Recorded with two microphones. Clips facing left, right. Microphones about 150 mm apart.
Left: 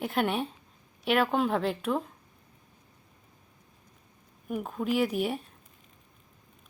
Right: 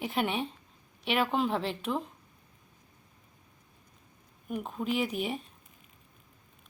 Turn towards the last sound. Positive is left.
turn(degrees=5)  # may be behind; listen again after turning